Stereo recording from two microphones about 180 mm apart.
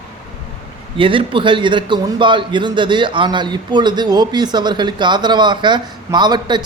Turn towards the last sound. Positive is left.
turn(degrees=-25)  # may be behind; listen again after turning